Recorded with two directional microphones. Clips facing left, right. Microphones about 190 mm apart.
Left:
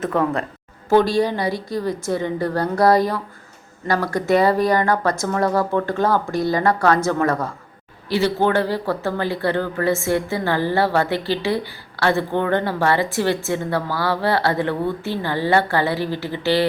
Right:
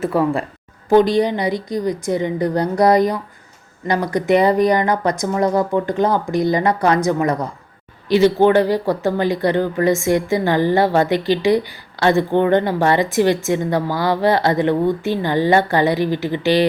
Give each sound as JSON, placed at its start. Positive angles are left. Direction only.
{"t": 0.0, "sound": "speech", "side_deg": -10}